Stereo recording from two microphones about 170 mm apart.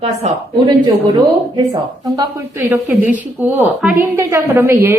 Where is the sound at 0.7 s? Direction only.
25° right (ahead or behind).